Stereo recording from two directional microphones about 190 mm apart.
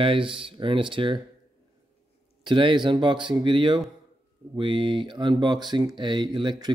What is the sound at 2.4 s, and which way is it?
Speech, 25° right (ahead or behind).